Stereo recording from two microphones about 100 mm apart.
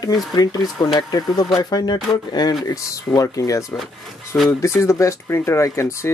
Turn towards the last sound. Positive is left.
turn(degrees=25)  # may be behind; listen again after turning